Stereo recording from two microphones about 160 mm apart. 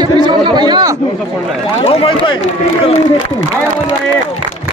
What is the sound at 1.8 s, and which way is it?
Speech, 35° left (ahead or behind).